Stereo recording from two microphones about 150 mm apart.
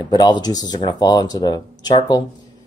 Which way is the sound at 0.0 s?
30° left (ahead or behind).